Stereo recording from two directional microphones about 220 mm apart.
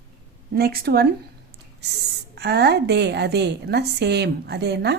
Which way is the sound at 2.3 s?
50° right (ahead or behind).